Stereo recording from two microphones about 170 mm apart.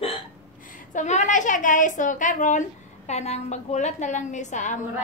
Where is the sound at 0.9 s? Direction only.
45° left (ahead or behind).